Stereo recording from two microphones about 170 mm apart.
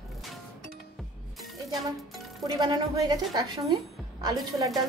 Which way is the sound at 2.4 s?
25° right (ahead or behind).